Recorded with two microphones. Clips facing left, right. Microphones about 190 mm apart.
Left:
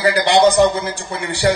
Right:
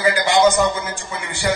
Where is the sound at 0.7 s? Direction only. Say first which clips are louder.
Left 4 dB; 65° left (ahead or behind).